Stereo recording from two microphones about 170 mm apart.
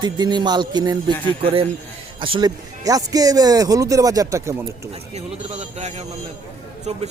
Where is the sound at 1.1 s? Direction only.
10° left (ahead or behind).